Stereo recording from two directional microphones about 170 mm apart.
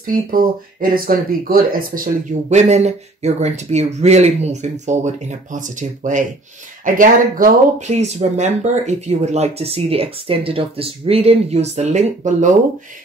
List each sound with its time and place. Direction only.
0.0 s speech: 55° right (ahead or behind)
2.5 s speech: 40° right (ahead or behind)
7.9 s speech: 40° right (ahead or behind)